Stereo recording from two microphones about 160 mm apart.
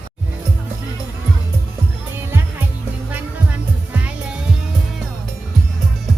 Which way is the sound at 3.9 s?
10° right (ahead or behind).